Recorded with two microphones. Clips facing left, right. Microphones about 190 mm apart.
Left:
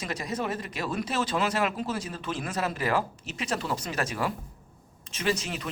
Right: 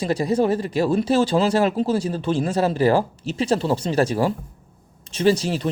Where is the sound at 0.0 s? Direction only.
30° right (ahead or behind).